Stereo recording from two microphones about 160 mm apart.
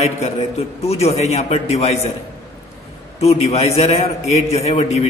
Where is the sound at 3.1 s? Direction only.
40° left (ahead or behind).